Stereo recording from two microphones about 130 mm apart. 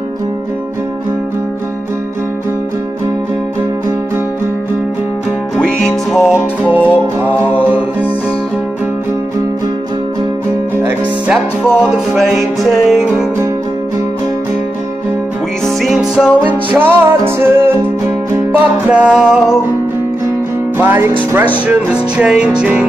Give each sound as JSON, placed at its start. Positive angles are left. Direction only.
{"t": 5.6, "sound": "music", "side_deg": 5}
{"t": 6.3, "sound": "music", "side_deg": -10}
{"t": 11.2, "sound": "music", "side_deg": -5}
{"t": 15.6, "sound": "music", "side_deg": 0}
{"t": 16.7, "sound": "music", "side_deg": -15}
{"t": 20.7, "sound": "music", "side_deg": -15}